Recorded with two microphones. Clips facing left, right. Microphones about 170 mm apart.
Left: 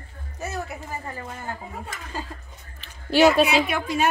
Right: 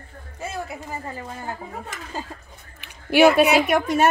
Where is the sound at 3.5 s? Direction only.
45° right (ahead or behind).